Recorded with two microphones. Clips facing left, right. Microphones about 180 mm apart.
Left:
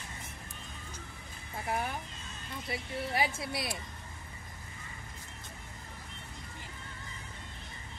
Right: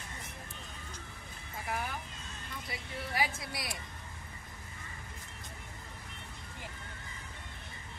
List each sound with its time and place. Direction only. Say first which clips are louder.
1.7 s speech: left 3 dB; 30° left (ahead or behind)